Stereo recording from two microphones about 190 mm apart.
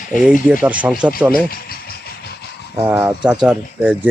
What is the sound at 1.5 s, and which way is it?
Vehicle, 55° left (ahead or behind).